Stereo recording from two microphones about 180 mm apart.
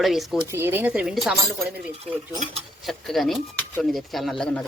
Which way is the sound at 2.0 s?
35° right (ahead or behind).